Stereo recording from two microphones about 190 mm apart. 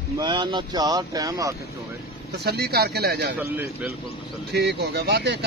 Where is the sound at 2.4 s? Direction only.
55° right (ahead or behind).